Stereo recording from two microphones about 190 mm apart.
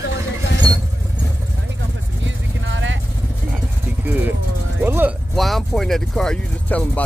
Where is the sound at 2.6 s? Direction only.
75° right (ahead or behind).